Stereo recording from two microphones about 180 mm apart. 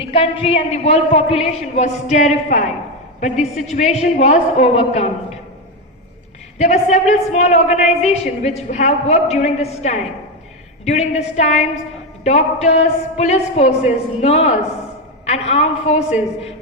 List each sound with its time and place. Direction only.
0.0 s a woman's voice: 30° left (ahead or behind)
6.6 s a woman's voice: 40° left (ahead or behind)